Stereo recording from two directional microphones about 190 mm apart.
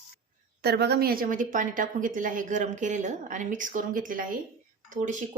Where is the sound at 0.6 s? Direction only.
60° right (ahead or behind); by 5.2 s 40° right (ahead or behind).